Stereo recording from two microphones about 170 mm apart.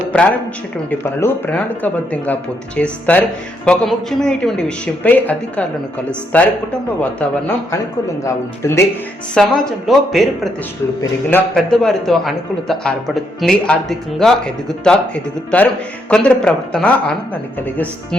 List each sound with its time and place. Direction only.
0.9 s a man's voice: 10° left (ahead or behind)
9.3 s a man's voice: 5° left (ahead or behind)